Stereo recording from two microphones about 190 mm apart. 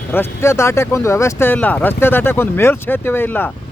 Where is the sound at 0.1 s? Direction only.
10° left (ahead or behind).